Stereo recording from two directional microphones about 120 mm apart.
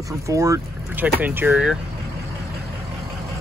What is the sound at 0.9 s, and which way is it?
Speech, 15° right (ahead or behind).